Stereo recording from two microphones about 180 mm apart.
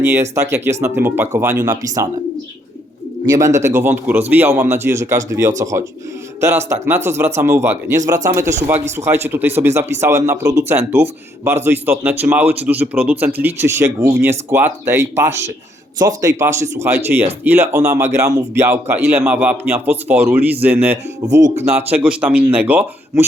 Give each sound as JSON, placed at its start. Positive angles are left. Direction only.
{"t": 0.0, "sound": "speech", "side_deg": -15}
{"t": 3.2, "sound": "speech", "side_deg": -15}